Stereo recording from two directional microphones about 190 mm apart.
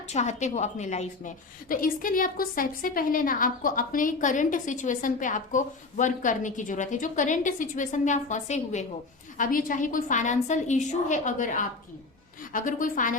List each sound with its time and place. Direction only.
0.1 s a woman's voice: 40° left (ahead or behind)